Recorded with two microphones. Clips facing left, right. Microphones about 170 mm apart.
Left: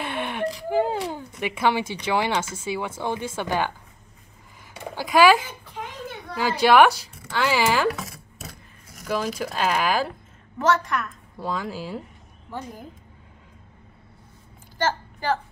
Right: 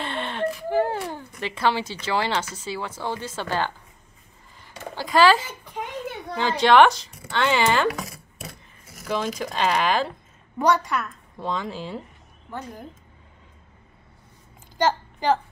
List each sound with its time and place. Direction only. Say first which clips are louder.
0.0 s a sound: even; 10° left (ahead or behind)
2.5 s speech: left 3 dB; 10° left (ahead or behind)
4.9 s speech: left 1 dB; 10° left (ahead or behind)
6.6 s speech: even; 10° left (ahead or behind)
10.6 s a woman's voice: right 1 dB; 10° right (ahead or behind)
11.3 s a woman's voice: even; 5° left (ahead or behind)
14.8 s a sound: right 3 dB; 15° right (ahead or behind)